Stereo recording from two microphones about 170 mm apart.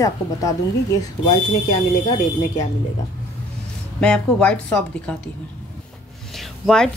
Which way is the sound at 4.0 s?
5° left (ahead or behind).